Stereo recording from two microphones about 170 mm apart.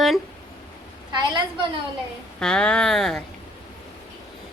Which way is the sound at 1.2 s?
25° right (ahead or behind).